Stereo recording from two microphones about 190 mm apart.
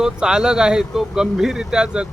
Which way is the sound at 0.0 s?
5° right (ahead or behind).